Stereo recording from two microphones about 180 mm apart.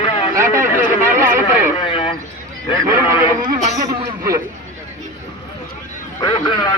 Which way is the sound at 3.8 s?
15° right (ahead or behind).